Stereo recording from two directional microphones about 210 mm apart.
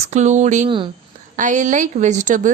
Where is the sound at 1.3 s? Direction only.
35° right (ahead or behind).